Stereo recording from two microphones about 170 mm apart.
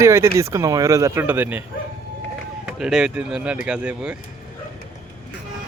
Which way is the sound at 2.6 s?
5° right (ahead or behind).